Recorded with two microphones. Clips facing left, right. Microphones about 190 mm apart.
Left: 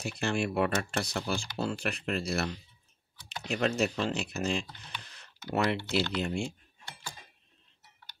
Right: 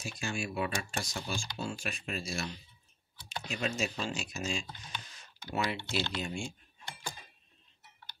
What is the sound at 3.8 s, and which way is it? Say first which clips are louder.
Speech: left 6 dB; 65° left (ahead or behind).